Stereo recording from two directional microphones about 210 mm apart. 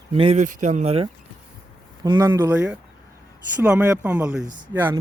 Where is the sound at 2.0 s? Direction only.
20° right (ahead or behind).